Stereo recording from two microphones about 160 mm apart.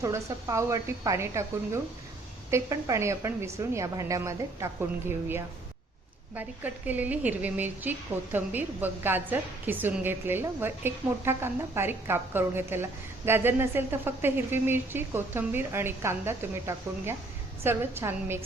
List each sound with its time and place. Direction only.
0.0 s a woman's voice: 20° right (ahead or behind)